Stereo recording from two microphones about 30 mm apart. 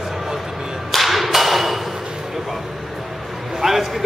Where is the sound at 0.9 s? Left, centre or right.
Centre.